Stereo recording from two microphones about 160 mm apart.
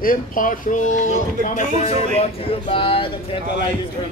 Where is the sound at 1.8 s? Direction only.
35° left (ahead or behind).